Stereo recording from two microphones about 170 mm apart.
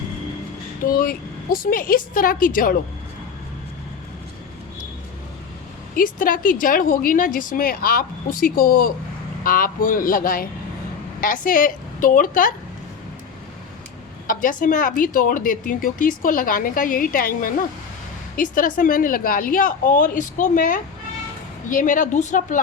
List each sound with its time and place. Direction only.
0.9 s speech: 55° left (ahead or behind)
5.9 s a woman's voice: 55° left (ahead or behind)
14.3 s a woman's voice: 55° left (ahead or behind)